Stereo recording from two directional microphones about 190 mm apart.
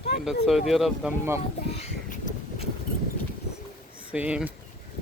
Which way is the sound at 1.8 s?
40° left (ahead or behind).